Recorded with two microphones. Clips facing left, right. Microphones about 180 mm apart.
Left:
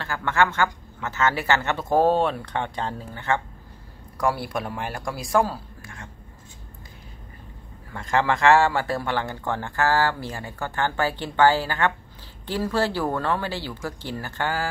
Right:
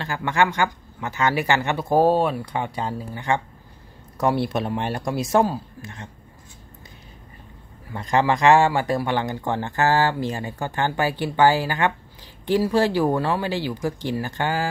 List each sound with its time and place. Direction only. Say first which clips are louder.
0.0 s speech: right 1 dB; 15° right (ahead or behind)
7.9 s speech: right 2 dB; 20° right (ahead or behind)